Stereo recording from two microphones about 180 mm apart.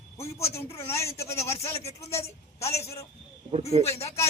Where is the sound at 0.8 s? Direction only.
15° left (ahead or behind).